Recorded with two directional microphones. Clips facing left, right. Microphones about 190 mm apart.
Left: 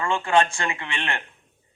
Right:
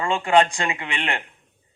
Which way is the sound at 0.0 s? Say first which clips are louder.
Right 3 dB; 15° right (ahead or behind).